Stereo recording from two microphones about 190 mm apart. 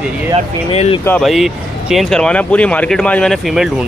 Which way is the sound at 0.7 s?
30° left (ahead or behind).